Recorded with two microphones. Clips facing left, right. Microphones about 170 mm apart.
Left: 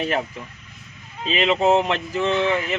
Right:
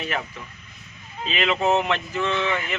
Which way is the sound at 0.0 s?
30° left (ahead or behind).